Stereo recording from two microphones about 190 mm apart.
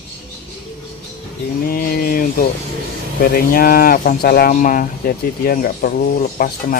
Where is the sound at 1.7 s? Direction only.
50° left (ahead or behind).